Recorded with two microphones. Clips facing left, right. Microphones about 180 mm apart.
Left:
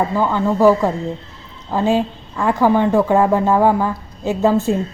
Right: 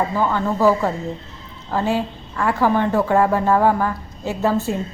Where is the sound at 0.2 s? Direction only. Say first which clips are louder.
Left 4 dB; 15° left (ahead or behind).